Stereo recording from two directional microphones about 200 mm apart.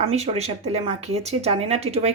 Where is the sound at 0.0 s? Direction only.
30° right (ahead or behind).